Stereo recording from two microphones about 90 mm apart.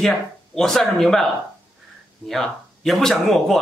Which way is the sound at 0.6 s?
5° left (ahead or behind).